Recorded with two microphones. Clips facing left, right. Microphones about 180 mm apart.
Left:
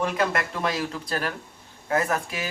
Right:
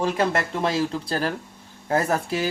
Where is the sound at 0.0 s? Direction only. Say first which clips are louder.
Right 2 dB; 30° right (ahead or behind).